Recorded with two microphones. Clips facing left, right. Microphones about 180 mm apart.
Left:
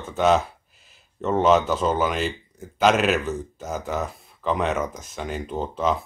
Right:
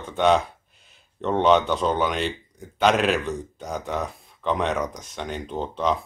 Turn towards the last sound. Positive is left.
turn(degrees=5)  # may be behind; listen again after turning